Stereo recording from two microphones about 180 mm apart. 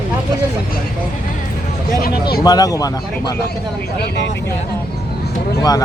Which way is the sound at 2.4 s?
20° left (ahead or behind).